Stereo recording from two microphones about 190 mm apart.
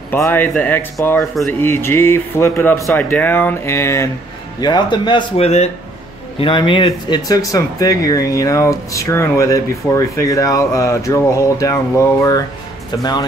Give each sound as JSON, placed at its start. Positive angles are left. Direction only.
{"t": 0.1, "sound": "speech", "side_deg": 10}